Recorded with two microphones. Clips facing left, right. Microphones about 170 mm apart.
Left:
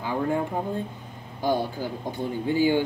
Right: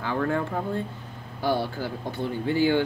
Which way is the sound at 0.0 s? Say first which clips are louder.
Even; 15° left (ahead or behind).